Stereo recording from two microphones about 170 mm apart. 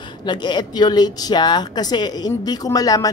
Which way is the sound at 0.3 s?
25° left (ahead or behind).